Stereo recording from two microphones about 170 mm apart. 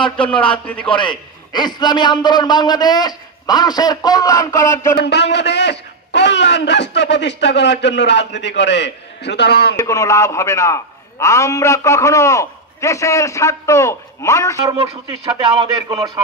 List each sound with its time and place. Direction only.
0.0 s a man's voice: 30° left (ahead or behind)
4.9 s speech: 80° left
9.8 s a man's voice: 20° left (ahead or behind)
15.3 s speech: 30° right (ahead or behind)